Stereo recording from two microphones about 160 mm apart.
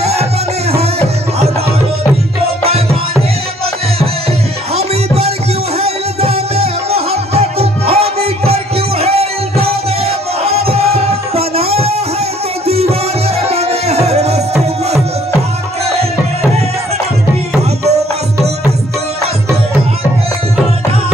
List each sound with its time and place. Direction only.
0.0 s music: 40° right (ahead or behind)
4.7 s music: 40° right (ahead or behind)
13.5 s music: 40° right (ahead or behind)